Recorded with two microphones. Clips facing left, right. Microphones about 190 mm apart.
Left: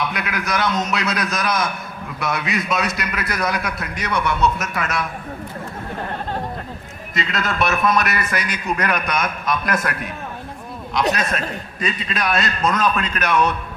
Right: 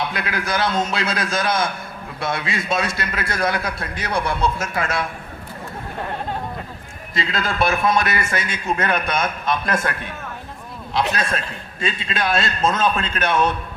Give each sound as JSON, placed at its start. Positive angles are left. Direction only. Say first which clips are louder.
{"t": 0.0, "sound": "a man's voice", "louder": "even", "side_deg": -30}
{"t": 7.1, "sound": "a man's voice", "louder": "even", "side_deg": -30}
{"t": 11.1, "sound": "a man's voice", "louder": "left 2 dB", "side_deg": -30}